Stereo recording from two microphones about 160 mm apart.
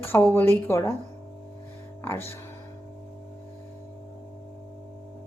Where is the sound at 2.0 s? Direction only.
15° left (ahead or behind).